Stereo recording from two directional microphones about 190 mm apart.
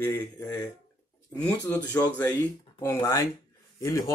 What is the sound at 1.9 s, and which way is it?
Speech, 10° left (ahead or behind).